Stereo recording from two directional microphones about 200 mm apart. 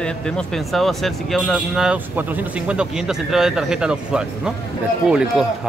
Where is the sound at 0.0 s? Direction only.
5° left (ahead or behind).